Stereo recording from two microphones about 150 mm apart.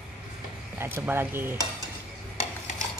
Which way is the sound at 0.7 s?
15° right (ahead or behind).